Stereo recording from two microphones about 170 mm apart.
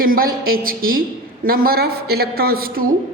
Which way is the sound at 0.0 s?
60° right (ahead or behind).